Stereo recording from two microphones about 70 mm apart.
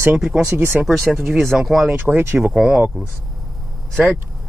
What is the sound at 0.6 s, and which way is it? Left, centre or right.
Speech, right.